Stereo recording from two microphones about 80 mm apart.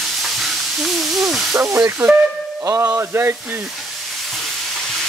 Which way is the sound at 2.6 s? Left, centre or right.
Right.